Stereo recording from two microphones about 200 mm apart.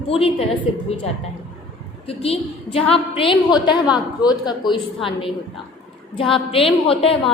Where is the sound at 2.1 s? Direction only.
30° left (ahead or behind).